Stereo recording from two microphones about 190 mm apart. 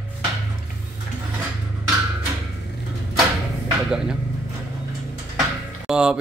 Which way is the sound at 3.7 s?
5° right (ahead or behind).